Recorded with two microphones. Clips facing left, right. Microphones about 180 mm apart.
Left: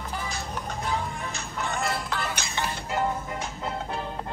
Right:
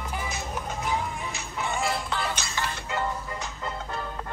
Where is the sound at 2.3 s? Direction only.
15° left (ahead or behind).